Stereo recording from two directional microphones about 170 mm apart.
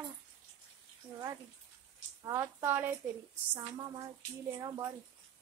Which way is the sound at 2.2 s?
15° right (ahead or behind).